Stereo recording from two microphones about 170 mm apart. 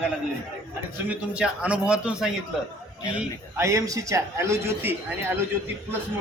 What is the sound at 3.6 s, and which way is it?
A man's voice, 20° right (ahead or behind).